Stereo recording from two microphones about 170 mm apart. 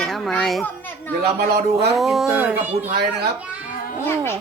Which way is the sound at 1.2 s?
65° right (ahead or behind).